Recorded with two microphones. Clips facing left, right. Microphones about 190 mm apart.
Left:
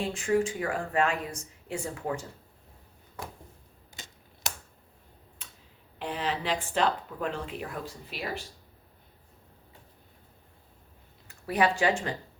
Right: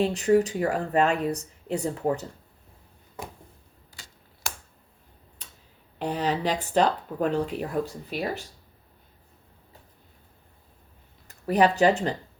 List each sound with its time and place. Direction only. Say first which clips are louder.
0.1 s speech: right 5 dB; 40° right (ahead or behind)
3.9 s finger snapping: left 3 dB; 20° left (ahead or behind)
6.0 s speech: right 6 dB; 40° right (ahead or behind)
11.3 s speech: right 5 dB; 40° right (ahead or behind)